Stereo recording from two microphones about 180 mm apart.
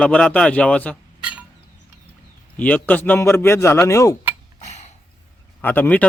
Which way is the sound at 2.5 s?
10° left (ahead or behind).